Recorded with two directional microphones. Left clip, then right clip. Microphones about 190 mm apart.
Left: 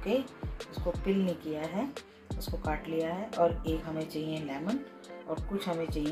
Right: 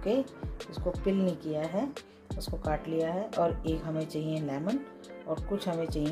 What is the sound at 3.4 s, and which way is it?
Speech, 60° right (ahead or behind).